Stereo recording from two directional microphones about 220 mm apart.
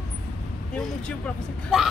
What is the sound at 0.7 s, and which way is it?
Speech, centre (ahead or behind).